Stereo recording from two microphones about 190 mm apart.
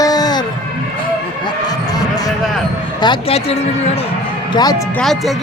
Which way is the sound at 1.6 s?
20° left (ahead or behind).